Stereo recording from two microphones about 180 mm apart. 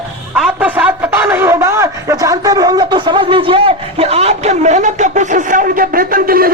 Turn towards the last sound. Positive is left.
turn(degrees=-55)  # may be behind; listen again after turning